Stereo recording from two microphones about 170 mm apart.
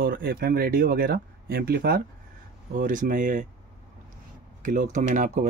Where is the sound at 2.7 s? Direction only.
50° right (ahead or behind).